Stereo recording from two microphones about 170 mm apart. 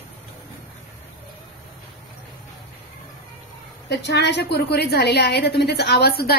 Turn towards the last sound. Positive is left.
turn(degrees=70)  # may be behind; listen again after turning